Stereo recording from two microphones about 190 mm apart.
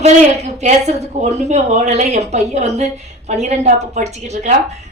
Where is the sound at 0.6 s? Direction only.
35° right (ahead or behind).